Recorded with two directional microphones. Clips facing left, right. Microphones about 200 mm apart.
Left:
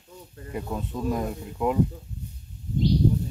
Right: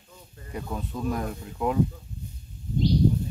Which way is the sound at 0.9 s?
20° left (ahead or behind).